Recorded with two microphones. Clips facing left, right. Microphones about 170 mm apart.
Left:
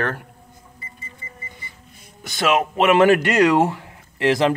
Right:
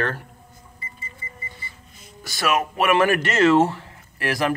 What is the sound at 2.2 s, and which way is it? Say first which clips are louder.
Speech: left 3 dB; 20° left (ahead or behind).